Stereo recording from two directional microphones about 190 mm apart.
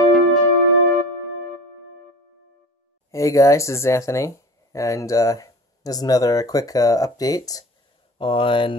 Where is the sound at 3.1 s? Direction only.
15° left (ahead or behind).